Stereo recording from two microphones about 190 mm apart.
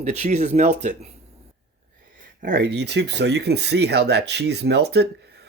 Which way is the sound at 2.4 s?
55° right (ahead or behind).